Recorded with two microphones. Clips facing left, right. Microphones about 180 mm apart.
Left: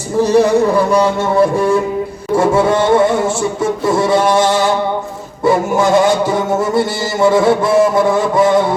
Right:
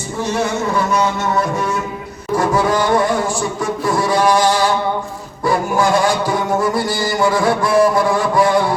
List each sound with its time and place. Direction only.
0.2 s speech: 35° left (ahead or behind)
2.3 s music: 25° left (ahead or behind)